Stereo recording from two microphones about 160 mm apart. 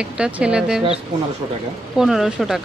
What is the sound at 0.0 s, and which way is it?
Speech, 5° right (ahead or behind).